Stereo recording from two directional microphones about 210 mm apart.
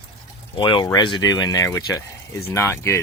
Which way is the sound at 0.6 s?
20° left (ahead or behind).